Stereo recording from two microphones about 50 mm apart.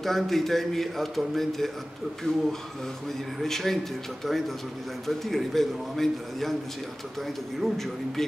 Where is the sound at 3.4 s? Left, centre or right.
Centre.